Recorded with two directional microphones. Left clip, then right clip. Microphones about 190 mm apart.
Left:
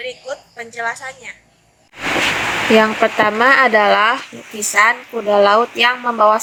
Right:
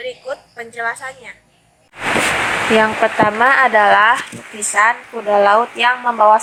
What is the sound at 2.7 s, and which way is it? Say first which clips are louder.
Speech: left 1 dB; 50° left (ahead or behind).